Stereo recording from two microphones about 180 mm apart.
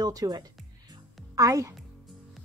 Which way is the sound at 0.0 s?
20° right (ahead or behind).